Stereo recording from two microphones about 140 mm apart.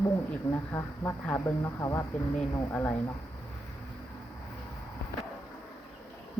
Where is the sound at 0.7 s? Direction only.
15° left (ahead or behind).